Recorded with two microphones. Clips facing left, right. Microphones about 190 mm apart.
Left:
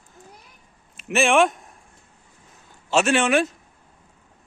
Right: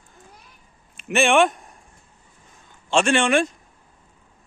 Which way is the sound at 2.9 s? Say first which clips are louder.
Even; 5° left (ahead or behind).